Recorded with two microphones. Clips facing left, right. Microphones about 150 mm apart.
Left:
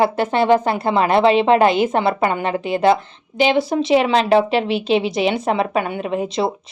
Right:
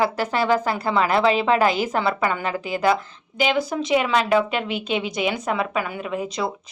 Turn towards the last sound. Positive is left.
turn(degrees=30)  # may be behind; listen again after turning